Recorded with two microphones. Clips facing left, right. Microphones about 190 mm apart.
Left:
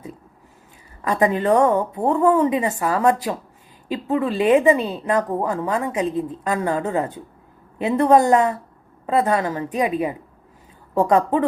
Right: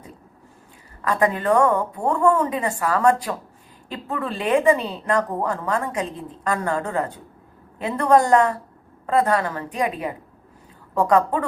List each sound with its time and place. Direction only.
1.0 s a woman's voice: 20° left (ahead or behind)